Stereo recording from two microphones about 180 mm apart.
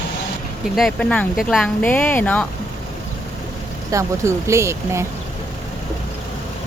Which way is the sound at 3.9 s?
15° right (ahead or behind).